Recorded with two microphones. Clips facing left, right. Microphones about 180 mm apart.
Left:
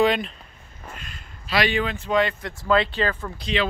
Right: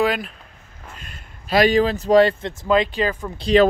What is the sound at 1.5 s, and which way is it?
Speech, 40° right (ahead or behind).